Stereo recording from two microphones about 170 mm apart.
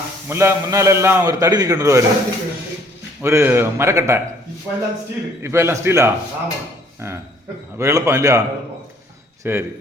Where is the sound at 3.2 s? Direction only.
15° right (ahead or behind).